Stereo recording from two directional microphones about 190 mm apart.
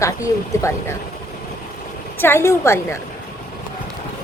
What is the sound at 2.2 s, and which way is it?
Speech, 10° left (ahead or behind).